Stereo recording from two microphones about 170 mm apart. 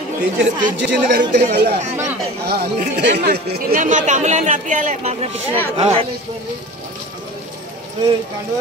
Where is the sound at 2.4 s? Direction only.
70° right (ahead or behind); by 5.3 s 40° right (ahead or behind).